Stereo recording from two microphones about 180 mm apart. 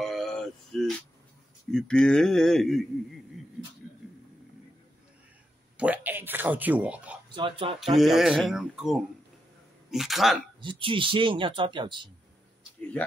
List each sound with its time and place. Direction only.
0.0 s a sound: centre (ahead or behind)
1.7 s speech: 5° left (ahead or behind)
5.8 s a sound: 10° right (ahead or behind)
7.3 s speech: 30° right (ahead or behind)
7.8 s speech: centre (ahead or behind)
10.6 s speech: 30° right (ahead or behind)